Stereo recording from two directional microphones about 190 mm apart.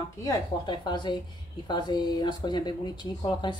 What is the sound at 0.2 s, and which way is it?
Speech, 20° left (ahead or behind).